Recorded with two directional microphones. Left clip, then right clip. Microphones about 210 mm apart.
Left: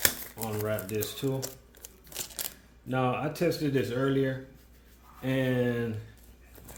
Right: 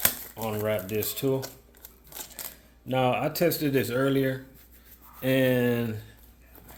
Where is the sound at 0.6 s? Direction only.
45° right (ahead or behind).